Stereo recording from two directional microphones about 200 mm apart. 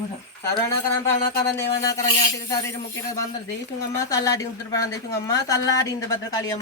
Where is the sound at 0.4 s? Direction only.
15° left (ahead or behind).